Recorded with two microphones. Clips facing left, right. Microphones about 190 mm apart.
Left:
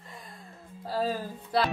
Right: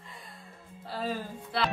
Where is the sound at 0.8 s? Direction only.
40° left (ahead or behind).